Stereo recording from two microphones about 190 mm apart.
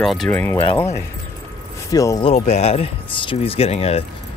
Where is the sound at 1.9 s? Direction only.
20° left (ahead or behind).